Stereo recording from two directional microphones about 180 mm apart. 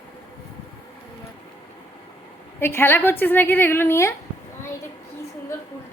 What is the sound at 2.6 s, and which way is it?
A woman's voice, 10° left (ahead or behind).